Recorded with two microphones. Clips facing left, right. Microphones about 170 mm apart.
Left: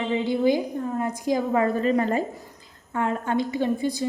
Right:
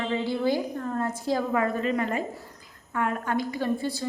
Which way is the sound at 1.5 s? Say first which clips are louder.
Left 4 dB; 30° left (ahead or behind).